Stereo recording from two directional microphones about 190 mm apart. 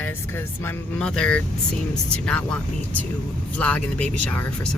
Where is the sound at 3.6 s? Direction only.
10° left (ahead or behind).